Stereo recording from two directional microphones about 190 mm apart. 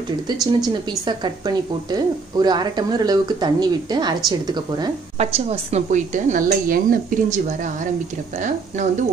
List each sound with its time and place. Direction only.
1.0 s a woman's voice: 25° right (ahead or behind)
5.1 s a woman's voice: 35° right (ahead or behind)